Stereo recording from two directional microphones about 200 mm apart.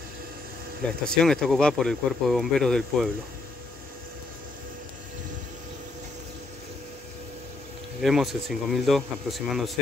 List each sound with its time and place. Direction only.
1.0 s speech: 5° left (ahead or behind)
8.0 s speech: centre (ahead or behind)